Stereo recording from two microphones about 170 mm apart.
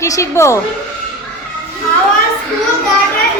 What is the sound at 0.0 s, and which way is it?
Speech, 15° left (ahead or behind).